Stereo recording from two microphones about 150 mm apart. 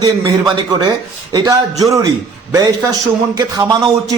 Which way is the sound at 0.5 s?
30° right (ahead or behind).